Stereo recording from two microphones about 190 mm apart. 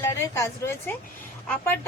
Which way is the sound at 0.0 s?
15° left (ahead or behind).